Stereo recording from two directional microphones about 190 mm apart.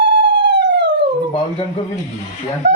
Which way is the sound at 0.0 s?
65° right (ahead or behind).